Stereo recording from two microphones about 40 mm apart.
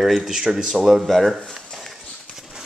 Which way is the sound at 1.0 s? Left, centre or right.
Centre.